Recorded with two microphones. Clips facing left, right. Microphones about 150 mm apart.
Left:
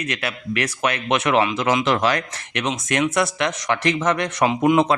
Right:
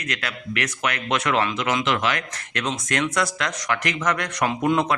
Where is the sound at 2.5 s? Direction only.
20° left (ahead or behind).